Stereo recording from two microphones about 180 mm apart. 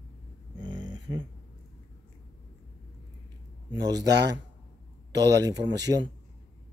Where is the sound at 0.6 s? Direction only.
25° right (ahead or behind).